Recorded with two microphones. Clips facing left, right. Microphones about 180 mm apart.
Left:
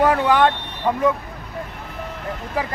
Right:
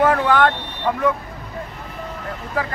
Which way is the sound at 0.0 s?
15° left (ahead or behind).